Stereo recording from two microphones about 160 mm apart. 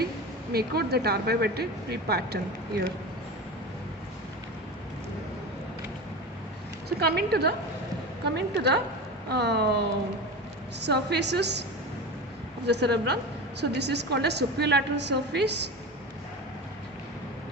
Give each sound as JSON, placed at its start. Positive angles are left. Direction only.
{"t": 0.5, "sound": "speech", "side_deg": -80}
{"t": 6.8, "sound": "a woman's voice", "side_deg": -85}
{"t": 10.8, "sound": "a woman's voice", "side_deg": -90}
{"t": 12.6, "sound": "a woman's voice", "side_deg": -90}